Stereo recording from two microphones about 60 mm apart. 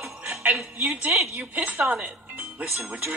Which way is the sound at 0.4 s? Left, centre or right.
Right.